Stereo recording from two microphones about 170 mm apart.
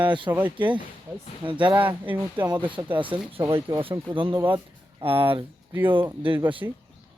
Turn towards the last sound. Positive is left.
turn(degrees=-20)  # may be behind; listen again after turning